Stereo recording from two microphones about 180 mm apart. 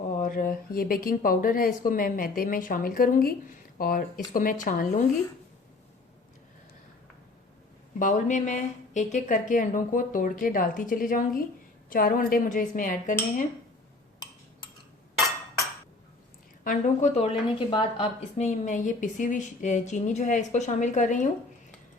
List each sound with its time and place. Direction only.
0.2 s a woman's voice: 50° left (ahead or behind)
7.9 s a woman's voice: 45° left (ahead or behind)
16.6 s a woman's voice: 35° left (ahead or behind)
18.3 s a woman's voice: 40° left (ahead or behind)